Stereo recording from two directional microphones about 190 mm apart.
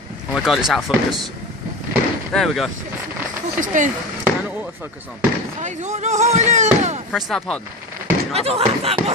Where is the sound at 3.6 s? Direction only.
40° right (ahead or behind).